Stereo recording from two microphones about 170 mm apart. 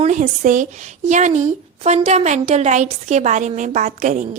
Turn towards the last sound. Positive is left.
turn(degrees=-50)  # may be behind; listen again after turning